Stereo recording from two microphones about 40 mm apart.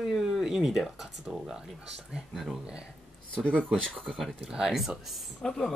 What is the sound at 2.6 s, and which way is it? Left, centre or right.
Speech, centre.